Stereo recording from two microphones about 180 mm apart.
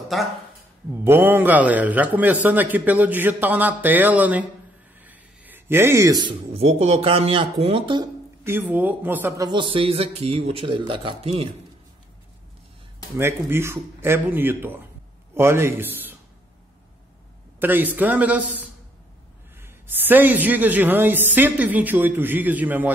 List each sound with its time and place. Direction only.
0.1 s speech: centre (ahead or behind)
0.9 s a man's voice: 10° right (ahead or behind)
5.0 s a sound: 10° right (ahead or behind)
6.5 s speech: 35° right (ahead or behind)
8.5 s a man's voice: 10° right (ahead or behind)
9.5 s speech: 30° right (ahead or behind)
13.2 s a man's voice: 15° right (ahead or behind)
17.6 s a man's voice: 10° right (ahead or behind)